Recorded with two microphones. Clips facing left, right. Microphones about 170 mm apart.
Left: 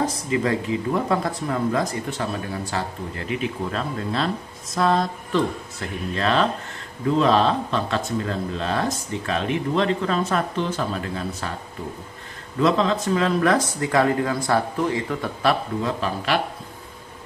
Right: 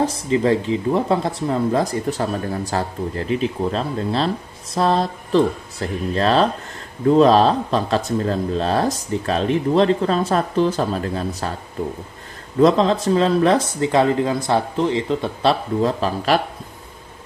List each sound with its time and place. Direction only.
0.0 s speech: 30° right (ahead or behind)
12.5 s speech: 35° right (ahead or behind)
15.8 s speech: 35° right (ahead or behind)